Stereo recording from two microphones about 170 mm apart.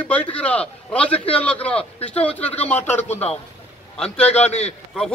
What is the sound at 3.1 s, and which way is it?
A man's voice, 40° left (ahead or behind).